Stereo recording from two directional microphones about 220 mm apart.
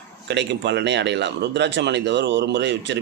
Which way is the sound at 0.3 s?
50° right (ahead or behind).